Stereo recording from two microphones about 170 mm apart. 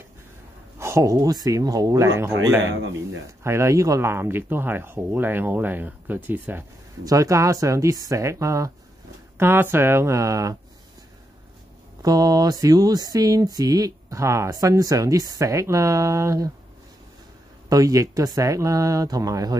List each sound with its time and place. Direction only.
0.7 s speech: 15° right (ahead or behind)
3.4 s speech: 15° right (ahead or behind)
12.0 s speech: 20° right (ahead or behind)
17.6 s speech: 20° right (ahead or behind)